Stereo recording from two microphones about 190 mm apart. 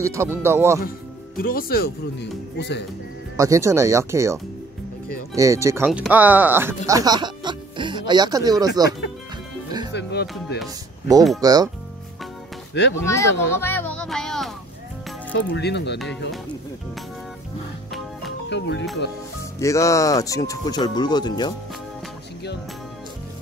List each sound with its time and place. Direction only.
0.0 s speech: 15° right (ahead or behind)
0.8 s speech: 50° left (ahead or behind)
3.3 s speech: 15° right (ahead or behind)
6.9 s music: 20° right (ahead or behind)
8.1 s speech: 20° right (ahead or behind)
9.9 s music: 65° left (ahead or behind)
11.4 s speech: 20° right (ahead or behind)
12.9 s speech: 15° left (ahead or behind)
15.3 s speech: 65° left (ahead or behind)
18.5 s speech: 70° left (ahead or behind)
19.6 s speech: 15° left (ahead or behind)